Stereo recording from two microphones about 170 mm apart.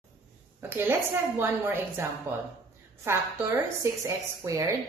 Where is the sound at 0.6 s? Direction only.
15° right (ahead or behind).